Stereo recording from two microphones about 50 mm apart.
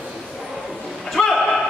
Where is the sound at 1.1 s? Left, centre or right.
Centre.